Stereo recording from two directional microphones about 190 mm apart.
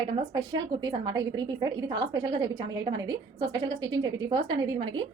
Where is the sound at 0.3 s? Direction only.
25° right (ahead or behind).